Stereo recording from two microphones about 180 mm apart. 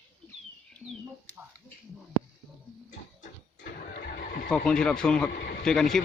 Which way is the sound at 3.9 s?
55° left (ahead or behind).